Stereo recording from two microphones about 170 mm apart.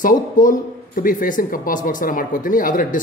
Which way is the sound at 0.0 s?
50° left (ahead or behind).